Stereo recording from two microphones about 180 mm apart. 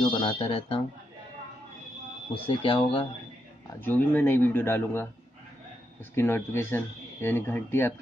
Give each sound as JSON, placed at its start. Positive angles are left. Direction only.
{"t": 0.1, "sound": "speech", "side_deg": 30}
{"t": 2.4, "sound": "speech", "side_deg": 30}
{"t": 3.8, "sound": "speech", "side_deg": 10}
{"t": 6.1, "sound": "speech", "side_deg": 10}